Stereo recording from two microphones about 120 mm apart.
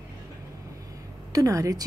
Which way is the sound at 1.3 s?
30° right (ahead or behind).